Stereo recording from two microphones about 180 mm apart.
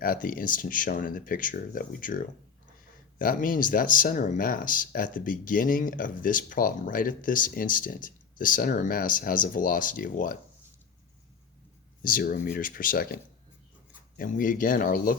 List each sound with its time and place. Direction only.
0.0 s speech: 50° left (ahead or behind)
12.0 s speech: 55° left (ahead or behind)
14.2 s speech: 50° left (ahead or behind)